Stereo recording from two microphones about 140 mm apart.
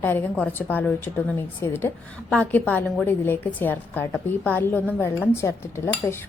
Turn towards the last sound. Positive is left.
turn(degrees=15)  # may be behind; listen again after turning